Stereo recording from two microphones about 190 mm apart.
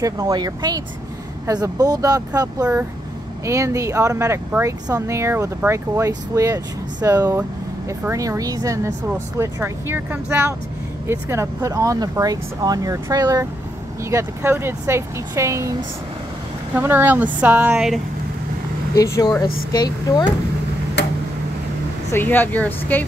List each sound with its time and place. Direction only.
0.0 s speech: 20° right (ahead or behind)
16.7 s speech: 10° right (ahead or behind)
18.9 s speech: 15° left (ahead or behind)
22.1 s speech: 10° left (ahead or behind)